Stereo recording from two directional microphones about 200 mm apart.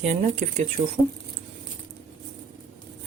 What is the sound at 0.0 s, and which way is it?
Speech, 35° right (ahead or behind).